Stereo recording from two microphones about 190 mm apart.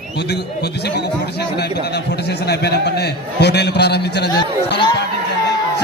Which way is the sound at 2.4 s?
60° left (ahead or behind).